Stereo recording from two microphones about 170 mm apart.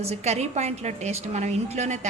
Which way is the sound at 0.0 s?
40° right (ahead or behind).